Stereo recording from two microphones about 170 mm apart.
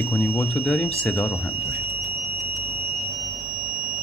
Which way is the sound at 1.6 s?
65° right (ahead or behind).